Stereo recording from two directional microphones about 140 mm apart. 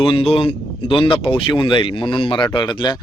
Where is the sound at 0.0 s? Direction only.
40° left (ahead or behind).